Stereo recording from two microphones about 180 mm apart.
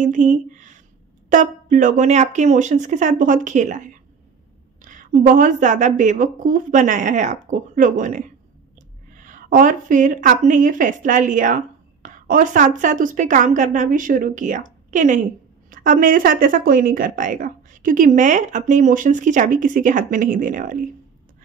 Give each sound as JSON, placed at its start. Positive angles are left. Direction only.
{"t": 0.0, "sound": "speech", "side_deg": -45}
{"t": 9.2, "sound": "speech", "side_deg": -45}